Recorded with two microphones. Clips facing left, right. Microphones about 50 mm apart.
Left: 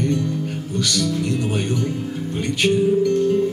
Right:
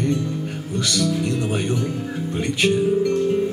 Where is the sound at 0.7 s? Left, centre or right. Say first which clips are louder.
Even; right.